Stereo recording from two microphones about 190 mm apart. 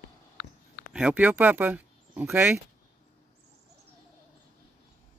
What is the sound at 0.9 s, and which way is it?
Speech, 5° right (ahead or behind).